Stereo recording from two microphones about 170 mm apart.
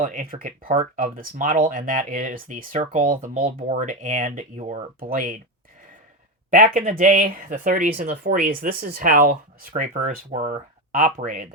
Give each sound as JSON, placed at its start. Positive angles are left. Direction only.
{"t": 0.0, "sound": "speech", "side_deg": -50}
{"t": 4.9, "sound": "speech", "side_deg": -55}
{"t": 6.5, "sound": "speech", "side_deg": -50}